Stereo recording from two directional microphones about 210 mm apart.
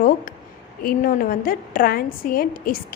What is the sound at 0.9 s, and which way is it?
A woman's voice, 40° left (ahead or behind).